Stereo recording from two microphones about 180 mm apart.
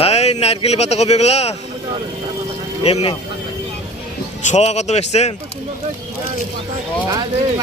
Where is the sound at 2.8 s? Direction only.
35° left (ahead or behind).